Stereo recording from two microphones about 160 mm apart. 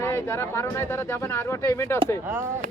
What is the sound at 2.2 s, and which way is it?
Speech, 15° right (ahead or behind).